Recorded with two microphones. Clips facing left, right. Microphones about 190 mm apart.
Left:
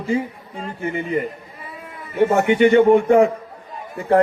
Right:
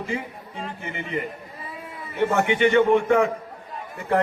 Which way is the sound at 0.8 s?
45° left (ahead or behind).